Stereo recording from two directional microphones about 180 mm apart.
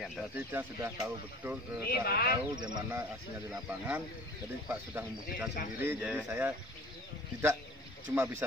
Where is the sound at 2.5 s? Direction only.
25° right (ahead or behind).